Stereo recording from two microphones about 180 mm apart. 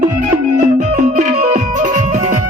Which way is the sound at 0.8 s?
45° right (ahead or behind).